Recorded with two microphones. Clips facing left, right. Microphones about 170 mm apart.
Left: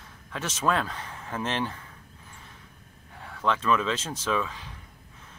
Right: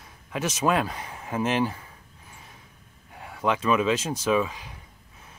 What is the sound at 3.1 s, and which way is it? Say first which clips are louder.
Speech: right 2 dB; 10° right (ahead or behind).